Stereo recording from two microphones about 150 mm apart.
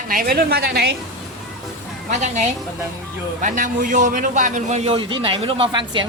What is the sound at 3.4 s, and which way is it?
A man's voice, 60° right (ahead or behind).